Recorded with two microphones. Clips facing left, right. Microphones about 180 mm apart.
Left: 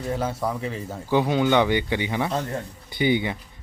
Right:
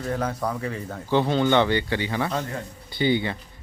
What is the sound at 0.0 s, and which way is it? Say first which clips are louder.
Speech: even; 5° left (ahead or behind).